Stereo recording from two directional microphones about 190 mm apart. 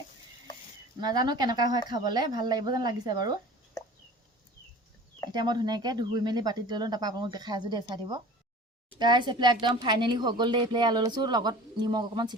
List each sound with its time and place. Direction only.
0.9 s speech: 20° right (ahead or behind)
5.3 s speech: 20° right (ahead or behind)